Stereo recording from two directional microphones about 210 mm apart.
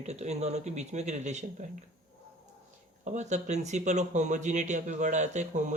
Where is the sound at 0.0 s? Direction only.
30° right (ahead or behind).